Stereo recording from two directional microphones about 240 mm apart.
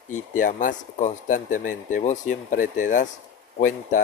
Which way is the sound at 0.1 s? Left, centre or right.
Left.